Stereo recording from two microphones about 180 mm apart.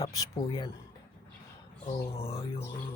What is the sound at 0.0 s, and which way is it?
Speech, 20° left (ahead or behind).